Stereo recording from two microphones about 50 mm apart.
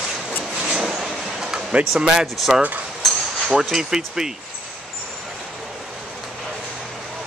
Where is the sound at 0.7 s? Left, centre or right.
Centre.